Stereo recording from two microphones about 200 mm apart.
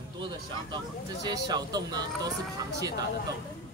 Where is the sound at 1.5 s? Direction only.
20° right (ahead or behind).